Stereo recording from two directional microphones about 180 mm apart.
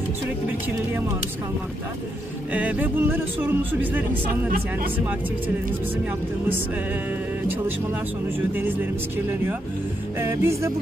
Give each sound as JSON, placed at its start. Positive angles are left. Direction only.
{"t": 2.5, "sound": "speech", "side_deg": -10}
{"t": 10.2, "sound": "speech", "side_deg": -15}